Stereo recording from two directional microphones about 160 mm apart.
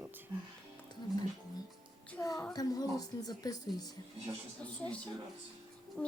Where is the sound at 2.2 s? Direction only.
20° left (ahead or behind).